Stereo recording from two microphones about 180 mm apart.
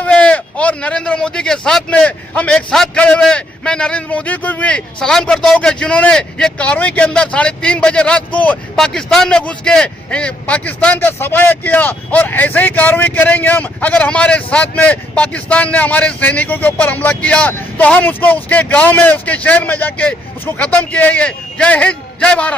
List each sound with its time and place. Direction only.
0.0 s speech: 5° left (ahead or behind)